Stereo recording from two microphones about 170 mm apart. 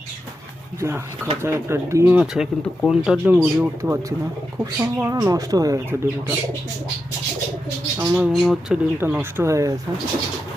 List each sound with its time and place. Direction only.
0.8 s speech: 15° right (ahead or behind)
7.9 s speech: 10° right (ahead or behind)
8.3 s speech: centre (ahead or behind)
9.0 s speech: 15° right (ahead or behind)